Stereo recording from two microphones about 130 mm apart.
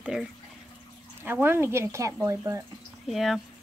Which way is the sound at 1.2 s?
15° right (ahead or behind).